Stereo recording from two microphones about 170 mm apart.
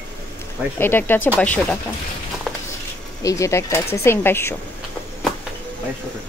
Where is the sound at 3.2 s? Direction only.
20° left (ahead or behind).